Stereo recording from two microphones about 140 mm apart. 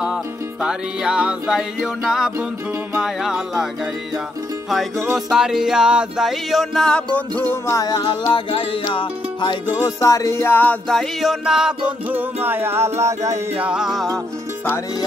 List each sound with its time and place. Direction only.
0.0 s music: 5° right (ahead or behind)
5.1 s music: 5° right (ahead or behind)
7.6 s music: 25° left (ahead or behind); by 13.4 s 20° right (ahead or behind)
13.6 s music: 5° right (ahead or behind)